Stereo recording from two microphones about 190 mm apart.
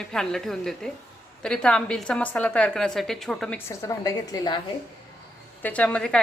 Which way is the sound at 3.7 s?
15° left (ahead or behind).